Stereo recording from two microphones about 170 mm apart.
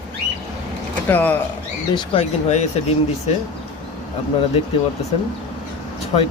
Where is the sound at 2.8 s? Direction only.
40° left (ahead or behind).